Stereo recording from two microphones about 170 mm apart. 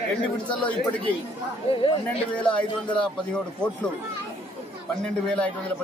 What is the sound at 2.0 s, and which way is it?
A man's voice, 10° left (ahead or behind).